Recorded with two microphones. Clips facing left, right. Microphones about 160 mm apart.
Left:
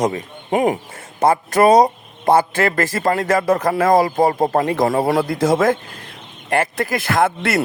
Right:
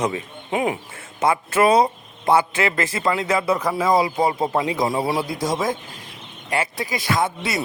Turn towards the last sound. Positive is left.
turn(degrees=60)  # may be behind; listen again after turning